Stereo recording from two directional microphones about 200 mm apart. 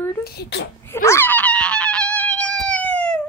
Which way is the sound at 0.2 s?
50° left (ahead or behind).